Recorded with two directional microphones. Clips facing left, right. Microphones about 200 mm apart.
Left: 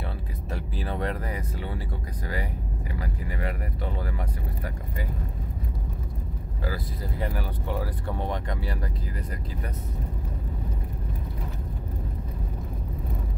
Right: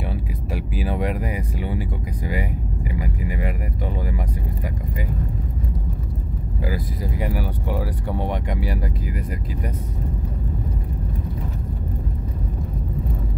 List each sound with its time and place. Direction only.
0.5 s speech: 10° right (ahead or behind)
6.6 s speech: 15° right (ahead or behind)